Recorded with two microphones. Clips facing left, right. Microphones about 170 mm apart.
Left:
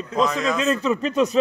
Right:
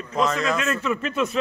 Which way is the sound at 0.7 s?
35° left (ahead or behind).